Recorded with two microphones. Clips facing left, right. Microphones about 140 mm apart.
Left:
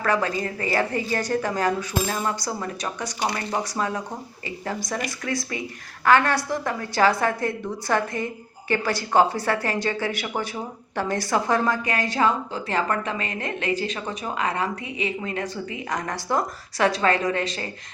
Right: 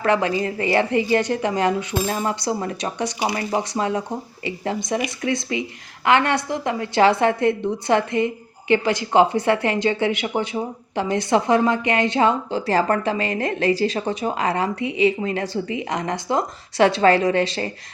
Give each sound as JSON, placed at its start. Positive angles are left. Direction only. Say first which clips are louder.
{"t": 0.0, "sound": "a woman's voice", "louder": "right 4 dB", "side_deg": -25}